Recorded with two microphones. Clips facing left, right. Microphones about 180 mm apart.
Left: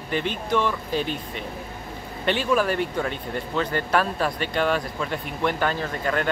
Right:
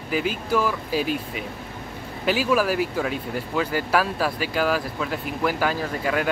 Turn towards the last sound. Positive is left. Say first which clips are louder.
# right 1 dB
turn(degrees=-5)  # may be behind; listen again after turning